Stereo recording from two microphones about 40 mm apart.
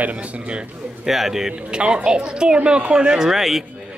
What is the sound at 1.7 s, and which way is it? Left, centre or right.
A woman's voice, right.